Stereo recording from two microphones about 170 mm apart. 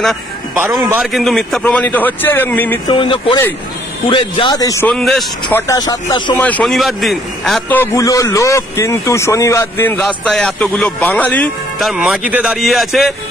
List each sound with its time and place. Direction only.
0.7 s a man's voice: 15° right (ahead or behind)
1.0 s speech: centre (ahead or behind)
2.9 s speech: 30° left (ahead or behind)
4.8 s a man's voice: centre (ahead or behind)
5.7 s speech: 20° left (ahead or behind)
6.3 s a man's voice: 10° left (ahead or behind)
7.7 s speech: 15° left (ahead or behind)
11.9 s a man's voice: 5° right (ahead or behind)